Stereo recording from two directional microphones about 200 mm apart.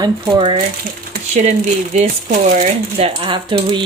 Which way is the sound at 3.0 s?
25° right (ahead or behind).